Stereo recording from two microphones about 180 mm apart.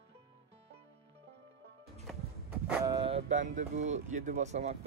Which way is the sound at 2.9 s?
30° right (ahead or behind).